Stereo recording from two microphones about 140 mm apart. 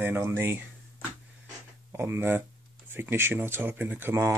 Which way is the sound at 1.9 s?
20° right (ahead or behind).